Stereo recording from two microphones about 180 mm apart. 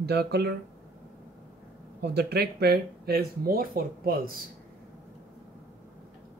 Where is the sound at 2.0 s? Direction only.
60° right (ahead or behind).